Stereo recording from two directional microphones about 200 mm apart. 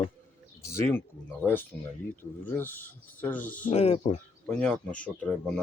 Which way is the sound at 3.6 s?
35° left (ahead or behind).